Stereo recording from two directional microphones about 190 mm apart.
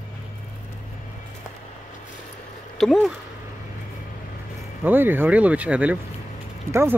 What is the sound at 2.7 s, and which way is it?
Speech, centre (ahead or behind).